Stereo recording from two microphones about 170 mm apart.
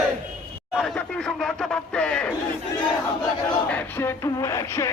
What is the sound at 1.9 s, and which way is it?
Battle cry, 5° left (ahead or behind).